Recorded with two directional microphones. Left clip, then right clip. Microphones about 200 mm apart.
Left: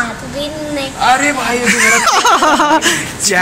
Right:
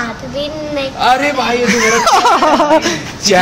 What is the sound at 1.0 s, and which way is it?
Speech, 50° right (ahead or behind).